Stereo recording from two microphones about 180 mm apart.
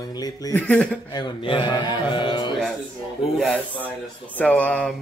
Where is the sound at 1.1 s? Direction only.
25° left (ahead or behind).